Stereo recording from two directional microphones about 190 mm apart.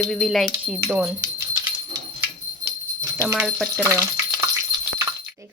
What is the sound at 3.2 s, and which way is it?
Speech, 10° right (ahead or behind).